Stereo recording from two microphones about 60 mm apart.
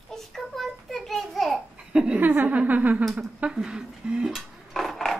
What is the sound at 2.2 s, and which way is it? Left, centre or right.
Speech, right.